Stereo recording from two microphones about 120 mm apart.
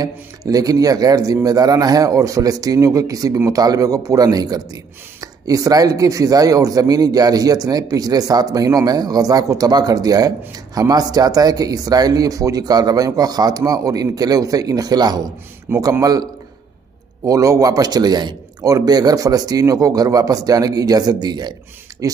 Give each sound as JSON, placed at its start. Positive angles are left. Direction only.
{"t": 0.0, "sound": "speech", "side_deg": -30}